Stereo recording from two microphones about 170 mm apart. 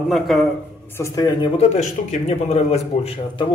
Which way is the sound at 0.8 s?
15° left (ahead or behind).